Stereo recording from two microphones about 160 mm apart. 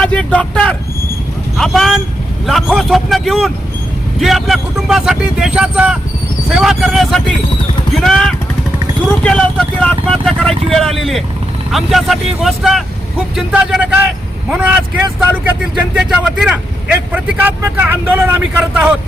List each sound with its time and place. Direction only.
0.0 s speech: 5° left (ahead or behind); by 18.9 s 10° right (ahead or behind)